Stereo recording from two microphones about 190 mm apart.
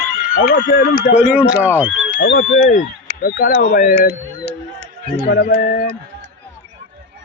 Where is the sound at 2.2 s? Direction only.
60° left (ahead or behind).